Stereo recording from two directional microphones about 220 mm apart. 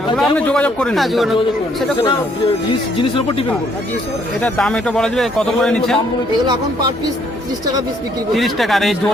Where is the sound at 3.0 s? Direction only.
25° left (ahead or behind).